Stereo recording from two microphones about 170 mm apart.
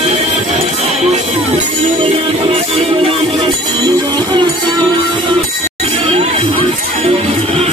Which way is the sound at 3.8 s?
25° right (ahead or behind).